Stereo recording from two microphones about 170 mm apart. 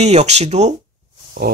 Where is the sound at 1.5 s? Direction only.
60° right (ahead or behind).